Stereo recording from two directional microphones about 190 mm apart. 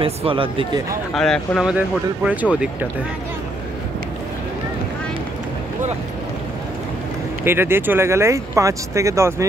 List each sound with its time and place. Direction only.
0.0 s speech: 30° right (ahead or behind)
1.1 s speech: 5° left (ahead or behind)
7.4 s speech: 10° right (ahead or behind)